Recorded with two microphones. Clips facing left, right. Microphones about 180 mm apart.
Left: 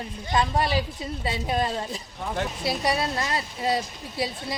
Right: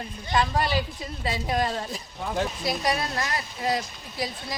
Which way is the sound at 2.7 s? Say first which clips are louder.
Left 1 dB; 30° left (ahead or behind).